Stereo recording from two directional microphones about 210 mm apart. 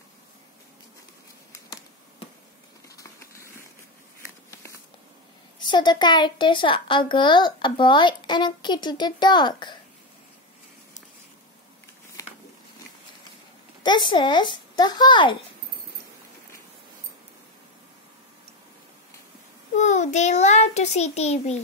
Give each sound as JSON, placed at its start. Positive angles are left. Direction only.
{"t": 3.0, "sound": "a sound", "side_deg": 15}
{"t": 5.6, "sound": "speech", "side_deg": 20}
{"t": 13.8, "sound": "speech", "side_deg": 20}
{"t": 19.7, "sound": "a child's voice", "side_deg": 35}